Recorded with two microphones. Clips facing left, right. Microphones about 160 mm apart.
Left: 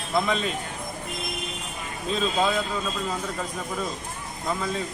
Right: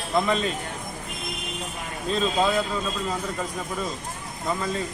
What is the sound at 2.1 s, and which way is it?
Speech, centre (ahead or behind).